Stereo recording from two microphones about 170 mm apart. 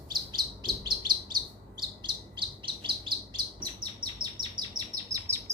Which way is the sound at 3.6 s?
25° right (ahead or behind).